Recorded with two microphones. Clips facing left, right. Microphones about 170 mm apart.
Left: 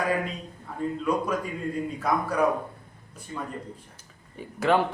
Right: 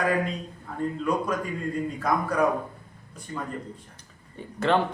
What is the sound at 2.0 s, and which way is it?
Speech, 5° left (ahead or behind).